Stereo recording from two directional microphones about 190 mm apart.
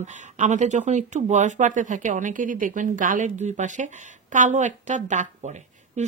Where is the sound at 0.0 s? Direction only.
40° right (ahead or behind).